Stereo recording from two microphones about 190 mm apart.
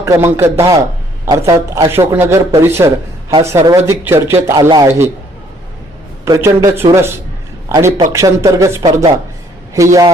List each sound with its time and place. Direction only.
0.0 s a man's voice: 15° right (ahead or behind)
6.2 s a man's voice: 20° right (ahead or behind)